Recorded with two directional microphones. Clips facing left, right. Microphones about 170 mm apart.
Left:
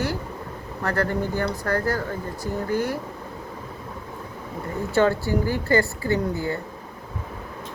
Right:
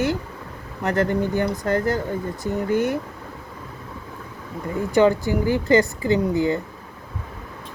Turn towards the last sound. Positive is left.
turn(degrees=-20)  # may be behind; listen again after turning